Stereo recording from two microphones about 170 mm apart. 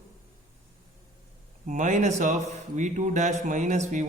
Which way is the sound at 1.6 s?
45° right (ahead or behind).